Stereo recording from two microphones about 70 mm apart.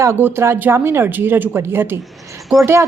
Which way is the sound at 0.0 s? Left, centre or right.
Right.